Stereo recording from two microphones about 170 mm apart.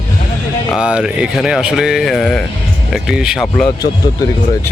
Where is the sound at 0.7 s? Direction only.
5° right (ahead or behind).